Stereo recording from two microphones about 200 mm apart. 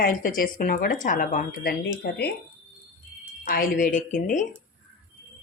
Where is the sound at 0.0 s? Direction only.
45° left (ahead or behind).